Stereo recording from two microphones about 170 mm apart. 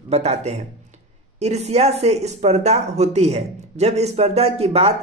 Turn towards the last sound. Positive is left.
turn(degrees=-35)  # may be behind; listen again after turning